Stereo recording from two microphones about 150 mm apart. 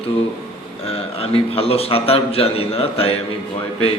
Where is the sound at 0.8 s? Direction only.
40° left (ahead or behind).